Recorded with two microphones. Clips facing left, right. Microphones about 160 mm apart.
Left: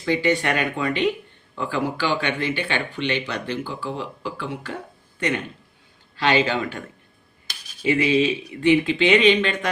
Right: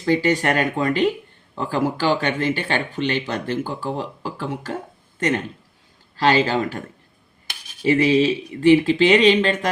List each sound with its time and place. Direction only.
0.0 s speech: 40° right (ahead or behind)
6.1 s speech: 40° right (ahead or behind)
7.9 s speech: 35° right (ahead or behind)